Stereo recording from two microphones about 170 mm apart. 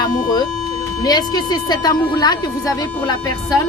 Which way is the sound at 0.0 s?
25° left (ahead or behind).